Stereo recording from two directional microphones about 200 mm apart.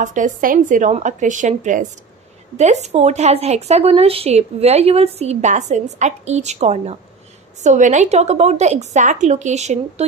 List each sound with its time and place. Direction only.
0.0 s a woman's voice: 40° right (ahead or behind)